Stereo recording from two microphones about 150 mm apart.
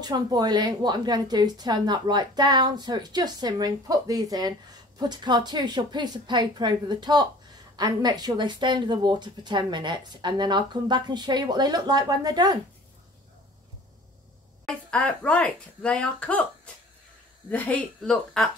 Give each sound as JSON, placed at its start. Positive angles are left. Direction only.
{"t": 0.0, "sound": "a woman's voice", "side_deg": -25}
{"t": 14.7, "sound": "a woman's voice", "side_deg": 5}